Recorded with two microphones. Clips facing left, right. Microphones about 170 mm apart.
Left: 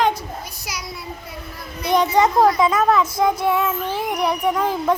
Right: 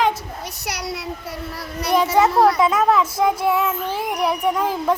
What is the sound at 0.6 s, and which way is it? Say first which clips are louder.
Speech: right 5 dB; 65° right (ahead or behind).